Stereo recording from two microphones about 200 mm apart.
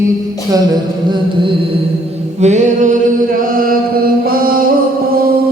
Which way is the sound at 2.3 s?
35° right (ahead or behind).